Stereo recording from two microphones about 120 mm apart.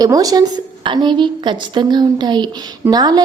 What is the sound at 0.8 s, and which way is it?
A woman's voice, 40° right (ahead or behind).